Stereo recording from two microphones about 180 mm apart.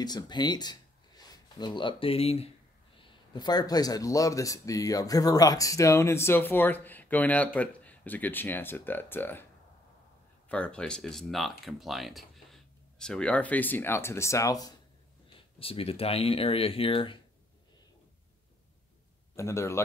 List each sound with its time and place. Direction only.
0.0 s speech: 25° left (ahead or behind)
3.0 s speech: 25° left (ahead or behind)
10.5 s speech: 5° left (ahead or behind)
15.3 s speech: 30° left (ahead or behind)
19.3 s speech: 15° left (ahead or behind)